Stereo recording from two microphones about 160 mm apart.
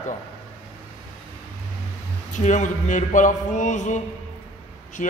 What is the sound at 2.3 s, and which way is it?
A man's voice, 50° left (ahead or behind).